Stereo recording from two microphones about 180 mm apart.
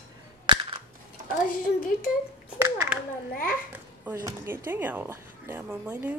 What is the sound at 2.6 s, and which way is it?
Speech, 15° right (ahead or behind).